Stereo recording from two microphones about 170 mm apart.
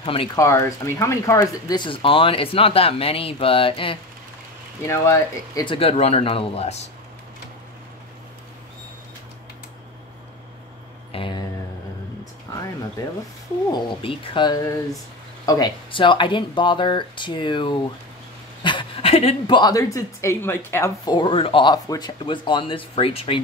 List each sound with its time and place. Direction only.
0.0 s speech: 30° left (ahead or behind)
0.4 s speech: 15° left (ahead or behind)
4.8 s speech: 15° left (ahead or behind)
5.8 s speech: 35° left (ahead or behind)
11.1 s a sound: 30° left (ahead or behind)
13.7 s speech: 25° left (ahead or behind)